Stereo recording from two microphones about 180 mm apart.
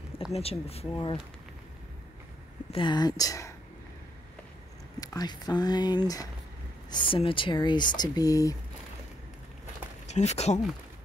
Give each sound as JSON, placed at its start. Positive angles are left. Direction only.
{"t": 0.3, "sound": "speech", "side_deg": 35}
{"t": 2.7, "sound": "speech", "side_deg": 25}
{"t": 5.0, "sound": "speech", "side_deg": 20}
{"t": 10.0, "sound": "speech", "side_deg": 40}